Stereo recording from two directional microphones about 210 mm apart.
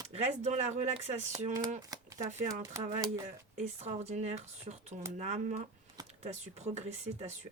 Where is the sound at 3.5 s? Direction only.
30° right (ahead or behind).